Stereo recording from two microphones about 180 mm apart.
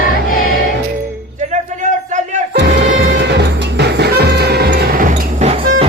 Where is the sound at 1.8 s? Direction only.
40° right (ahead or behind).